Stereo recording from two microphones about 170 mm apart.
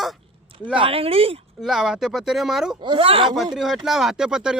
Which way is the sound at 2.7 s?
30° right (ahead or behind).